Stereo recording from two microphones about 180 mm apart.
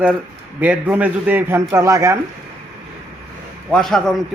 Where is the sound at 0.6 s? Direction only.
10° right (ahead or behind).